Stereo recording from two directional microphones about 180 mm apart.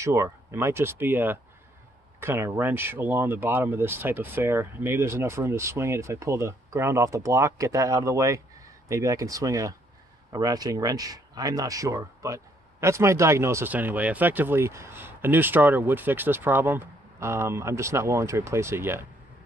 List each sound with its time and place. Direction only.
0.0 s speech: 15° right (ahead or behind)